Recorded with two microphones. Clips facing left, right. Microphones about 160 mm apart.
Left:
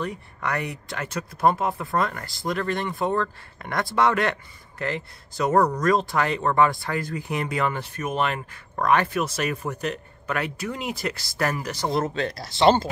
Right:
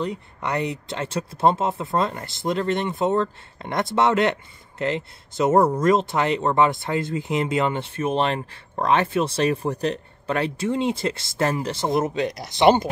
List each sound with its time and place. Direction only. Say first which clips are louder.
0.0 s speech: right 2 dB; 20° right (ahead or behind)